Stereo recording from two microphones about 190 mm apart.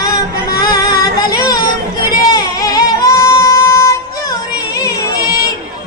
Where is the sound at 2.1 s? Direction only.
20° left (ahead or behind).